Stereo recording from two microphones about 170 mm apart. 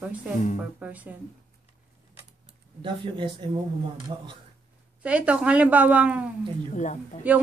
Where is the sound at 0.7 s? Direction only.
10° right (ahead or behind).